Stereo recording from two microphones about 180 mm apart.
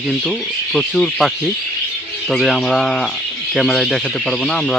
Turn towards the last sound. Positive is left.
turn(degrees=5)  # may be behind; listen again after turning